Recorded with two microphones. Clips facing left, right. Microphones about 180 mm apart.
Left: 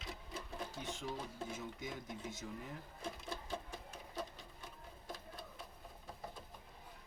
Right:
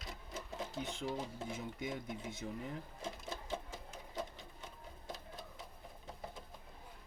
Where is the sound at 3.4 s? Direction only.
20° right (ahead or behind).